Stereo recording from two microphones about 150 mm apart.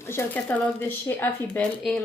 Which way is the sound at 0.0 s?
15° left (ahead or behind).